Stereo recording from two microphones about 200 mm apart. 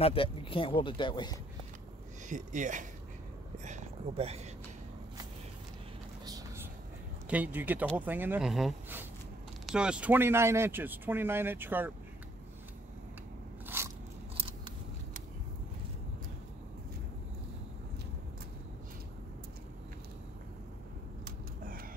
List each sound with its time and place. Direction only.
0.0 s speech: 25° left (ahead or behind)
2.2 s speech: 40° right (ahead or behind)
6.2 s a sound: 15° right (ahead or behind)
7.2 s speech: 5° right (ahead or behind)
13.7 s biting: 10° right (ahead or behind)